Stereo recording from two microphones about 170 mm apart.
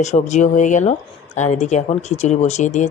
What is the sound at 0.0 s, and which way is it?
Speech, 45° left (ahead or behind).